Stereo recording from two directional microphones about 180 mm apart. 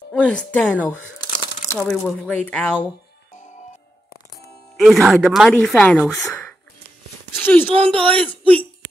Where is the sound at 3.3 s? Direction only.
45° left (ahead or behind).